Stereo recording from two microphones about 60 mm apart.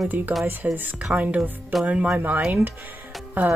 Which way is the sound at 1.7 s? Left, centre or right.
Centre.